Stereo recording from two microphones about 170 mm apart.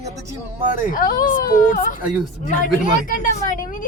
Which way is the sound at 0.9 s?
55° left (ahead or behind).